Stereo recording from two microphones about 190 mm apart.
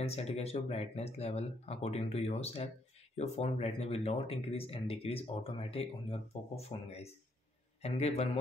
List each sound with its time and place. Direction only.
0.0 s speech: 35° left (ahead or behind)